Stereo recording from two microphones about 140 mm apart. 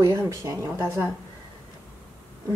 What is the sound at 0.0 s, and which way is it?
Speech, 20° right (ahead or behind).